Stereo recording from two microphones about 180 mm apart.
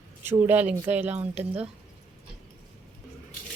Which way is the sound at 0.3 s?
10° right (ahead or behind).